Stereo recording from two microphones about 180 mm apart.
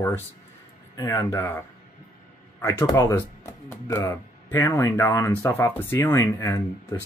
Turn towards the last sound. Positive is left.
turn(degrees=15)  # may be behind; listen again after turning